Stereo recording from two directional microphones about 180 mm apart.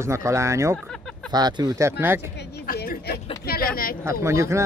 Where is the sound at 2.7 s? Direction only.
55° left (ahead or behind).